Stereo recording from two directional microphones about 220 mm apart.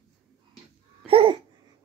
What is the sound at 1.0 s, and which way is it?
Babbling, 25° right (ahead or behind).